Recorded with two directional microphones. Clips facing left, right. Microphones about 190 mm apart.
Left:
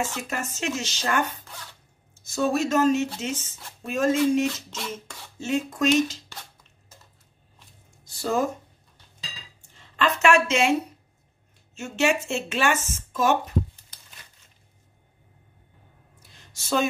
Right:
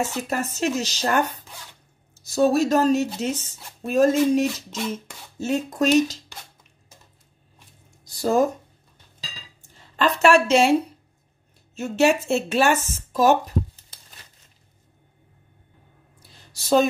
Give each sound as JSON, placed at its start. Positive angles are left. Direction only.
{"t": 0.3, "sound": "speech", "side_deg": -40}
{"t": 2.2, "sound": "speech", "side_deg": -35}
{"t": 8.0, "sound": "speech", "side_deg": -40}
{"t": 9.6, "sound": "speech", "side_deg": -35}
{"t": 16.2, "sound": "a sound", "side_deg": -35}